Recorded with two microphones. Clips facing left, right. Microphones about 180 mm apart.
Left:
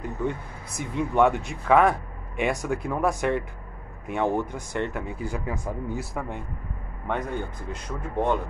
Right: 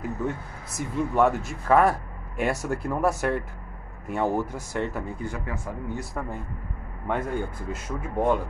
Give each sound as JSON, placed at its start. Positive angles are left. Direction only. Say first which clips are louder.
{"t": 0.7, "sound": "speech", "louder": "left 1 dB", "side_deg": -5}
{"t": 5.2, "sound": "speech", "louder": "left 2 dB", "side_deg": 15}
{"t": 6.1, "sound": "speech", "louder": "even", "side_deg": 0}